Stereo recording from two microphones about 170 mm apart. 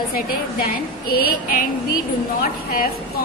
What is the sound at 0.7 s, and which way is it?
Speech, 60° left (ahead or behind).